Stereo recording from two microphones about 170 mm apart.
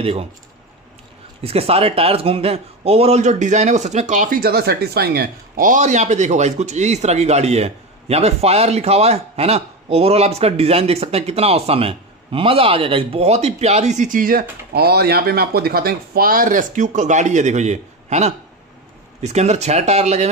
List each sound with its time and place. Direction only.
0.0 s a man's voice: 35° right (ahead or behind)
1.4 s a man's voice: 35° right (ahead or behind); by 14.4 s 55° right (ahead or behind)
14.7 s a man's voice: 65° right (ahead or behind); by 20.2 s 40° right (ahead or behind)